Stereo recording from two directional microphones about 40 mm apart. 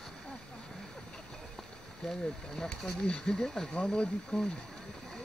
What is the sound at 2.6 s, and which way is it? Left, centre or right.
Speech, left.